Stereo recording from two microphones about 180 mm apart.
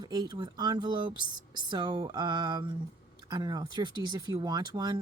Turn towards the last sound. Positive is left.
turn(degrees=-25)  # may be behind; listen again after turning